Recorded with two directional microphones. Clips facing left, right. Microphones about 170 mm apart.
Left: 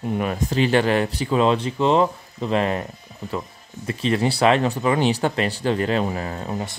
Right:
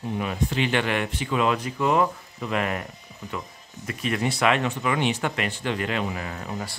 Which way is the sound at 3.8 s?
30° left (ahead or behind).